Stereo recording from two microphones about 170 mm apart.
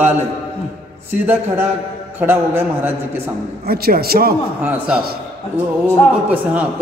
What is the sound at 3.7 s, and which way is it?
Speech, 65° right (ahead or behind).